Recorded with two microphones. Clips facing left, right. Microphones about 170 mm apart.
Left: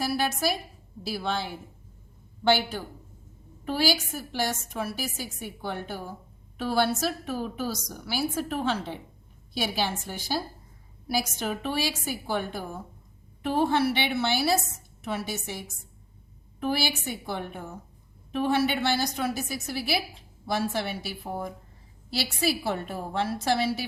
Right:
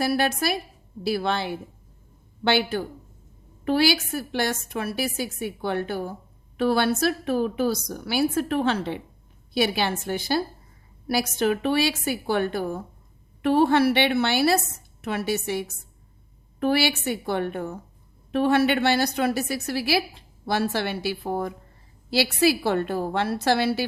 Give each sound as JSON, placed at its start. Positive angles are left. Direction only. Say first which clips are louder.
{"t": 0.0, "sound": "a woman's voice", "louder": "right 4 dB", "side_deg": -60}